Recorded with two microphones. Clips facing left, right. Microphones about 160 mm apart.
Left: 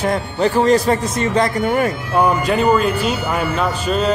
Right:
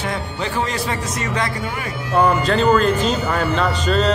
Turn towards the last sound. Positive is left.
turn(degrees=10)  # may be behind; listen again after turning